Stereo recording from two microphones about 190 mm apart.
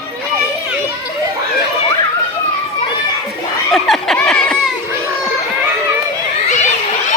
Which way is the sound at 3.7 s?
Centre (ahead or behind).